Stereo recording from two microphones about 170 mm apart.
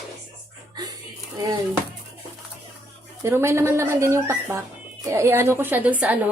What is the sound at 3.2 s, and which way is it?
A woman's voice, 15° right (ahead or behind).